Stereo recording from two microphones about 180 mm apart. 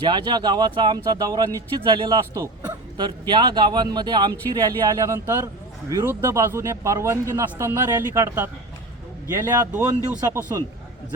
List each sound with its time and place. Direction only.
0.0 s speech: 25° right (ahead or behind)